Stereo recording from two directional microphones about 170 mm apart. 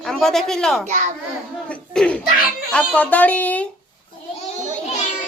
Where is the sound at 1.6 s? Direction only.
5° left (ahead or behind).